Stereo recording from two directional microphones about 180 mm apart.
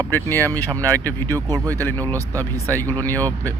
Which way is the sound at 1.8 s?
10° left (ahead or behind).